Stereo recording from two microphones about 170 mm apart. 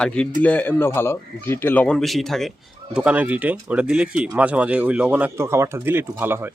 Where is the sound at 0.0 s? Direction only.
5° left (ahead or behind).